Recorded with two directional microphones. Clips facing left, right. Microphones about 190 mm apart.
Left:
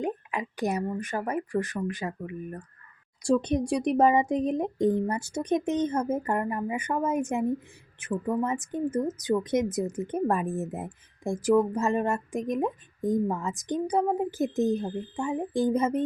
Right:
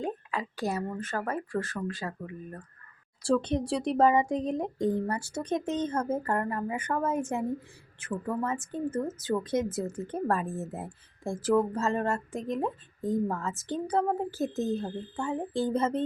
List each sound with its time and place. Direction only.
0.0 s a woman's voice: 15° left (ahead or behind)